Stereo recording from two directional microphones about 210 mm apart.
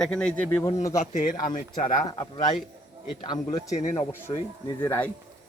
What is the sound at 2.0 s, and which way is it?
Speech, 20° left (ahead or behind).